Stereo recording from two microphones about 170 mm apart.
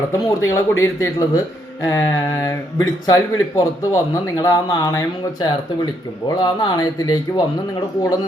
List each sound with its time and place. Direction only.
0.1 s speech: 15° left (ahead or behind)